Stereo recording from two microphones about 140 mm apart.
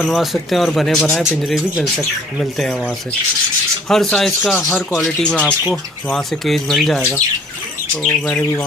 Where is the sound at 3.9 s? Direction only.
Centre (ahead or behind).